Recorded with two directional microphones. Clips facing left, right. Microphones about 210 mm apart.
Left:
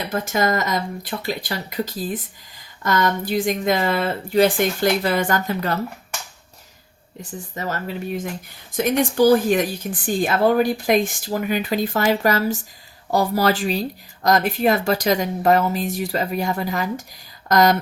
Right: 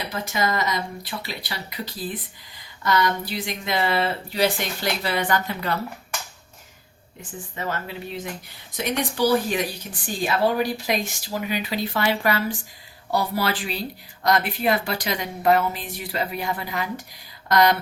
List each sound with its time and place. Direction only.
0.1 s speech: 50° left (ahead or behind)
7.2 s speech: 40° left (ahead or behind)